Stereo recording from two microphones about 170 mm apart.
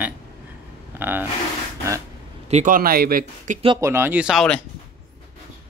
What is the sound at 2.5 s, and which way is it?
Speech, 50° right (ahead or behind).